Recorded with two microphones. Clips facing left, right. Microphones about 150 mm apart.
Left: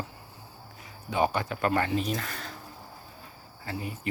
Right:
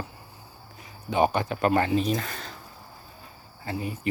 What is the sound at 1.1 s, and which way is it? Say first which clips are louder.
Speech: right 4 dB; 20° right (ahead or behind).